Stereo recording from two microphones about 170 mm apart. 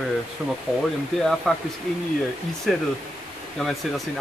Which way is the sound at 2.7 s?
Centre (ahead or behind).